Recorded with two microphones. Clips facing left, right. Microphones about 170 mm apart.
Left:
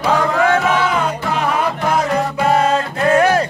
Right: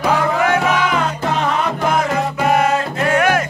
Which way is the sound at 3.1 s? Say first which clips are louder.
Left 3 dB; 30° left (ahead or behind).